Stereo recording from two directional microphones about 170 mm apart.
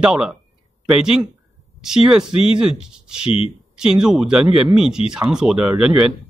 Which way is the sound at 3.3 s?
35° left (ahead or behind).